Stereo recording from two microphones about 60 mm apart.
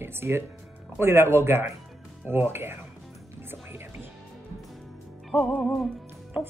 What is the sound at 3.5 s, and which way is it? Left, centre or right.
Music, right.